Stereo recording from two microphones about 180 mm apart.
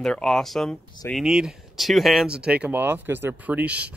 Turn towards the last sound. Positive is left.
turn(degrees=-10)  # may be behind; listen again after turning